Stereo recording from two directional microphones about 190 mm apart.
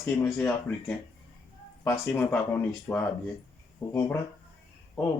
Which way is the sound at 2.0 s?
10° left (ahead or behind).